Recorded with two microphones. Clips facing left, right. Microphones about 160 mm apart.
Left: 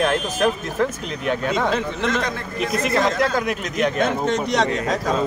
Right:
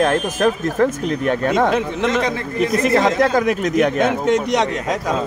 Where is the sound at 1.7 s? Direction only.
5° right (ahead or behind).